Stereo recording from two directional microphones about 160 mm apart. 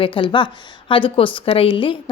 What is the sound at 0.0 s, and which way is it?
A woman's voice, 30° left (ahead or behind).